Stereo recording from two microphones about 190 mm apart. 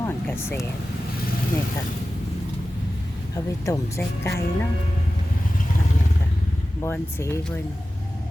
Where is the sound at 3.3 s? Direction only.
15° left (ahead or behind).